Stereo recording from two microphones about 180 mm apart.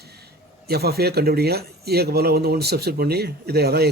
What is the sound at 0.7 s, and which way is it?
Speech, 60° right (ahead or behind).